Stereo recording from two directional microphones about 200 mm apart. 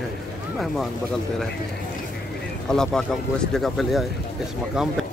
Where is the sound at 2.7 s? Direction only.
Centre (ahead or behind).